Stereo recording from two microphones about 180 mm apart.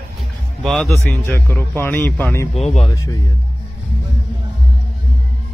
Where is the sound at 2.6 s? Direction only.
35° left (ahead or behind).